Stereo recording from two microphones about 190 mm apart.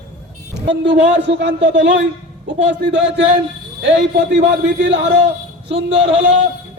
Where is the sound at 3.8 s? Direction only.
70° right (ahead or behind).